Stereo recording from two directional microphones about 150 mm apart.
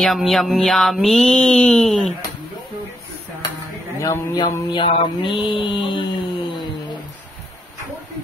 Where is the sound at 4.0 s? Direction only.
25° left (ahead or behind).